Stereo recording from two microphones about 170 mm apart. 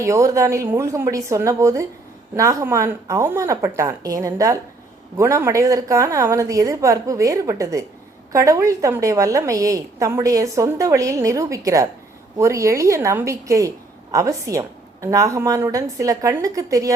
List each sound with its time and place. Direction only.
0.0 s a woman's voice: 20° right (ahead or behind)